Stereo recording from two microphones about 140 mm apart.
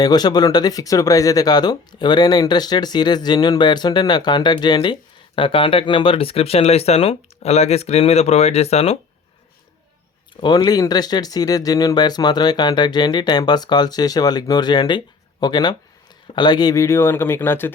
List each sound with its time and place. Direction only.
0.0 s speech: 30° left (ahead or behind); by 9.0 s 45° left (ahead or behind)
10.4 s speech: 30° left (ahead or behind)